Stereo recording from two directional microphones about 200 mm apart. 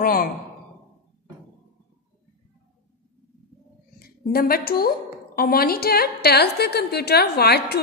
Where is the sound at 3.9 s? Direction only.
50° left (ahead or behind).